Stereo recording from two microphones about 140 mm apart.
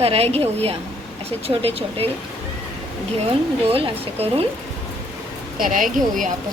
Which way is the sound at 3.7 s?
45° right (ahead or behind).